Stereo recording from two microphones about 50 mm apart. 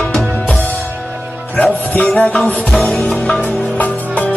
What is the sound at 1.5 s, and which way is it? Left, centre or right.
Music, left.